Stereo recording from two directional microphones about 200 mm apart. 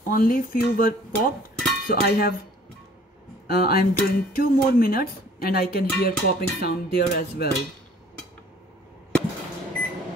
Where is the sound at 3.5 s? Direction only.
50° left (ahead or behind).